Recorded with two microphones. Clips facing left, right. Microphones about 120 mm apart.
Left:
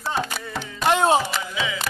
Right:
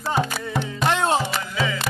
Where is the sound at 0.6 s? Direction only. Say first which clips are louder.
Left 2 dB; 5° left (ahead or behind).